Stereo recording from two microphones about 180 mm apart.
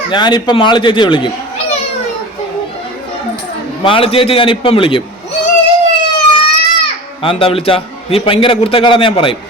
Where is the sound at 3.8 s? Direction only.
30° left (ahead or behind).